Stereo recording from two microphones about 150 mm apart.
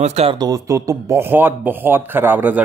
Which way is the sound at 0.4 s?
20° right (ahead or behind).